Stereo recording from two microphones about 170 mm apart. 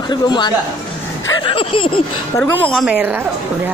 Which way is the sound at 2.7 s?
5° right (ahead or behind).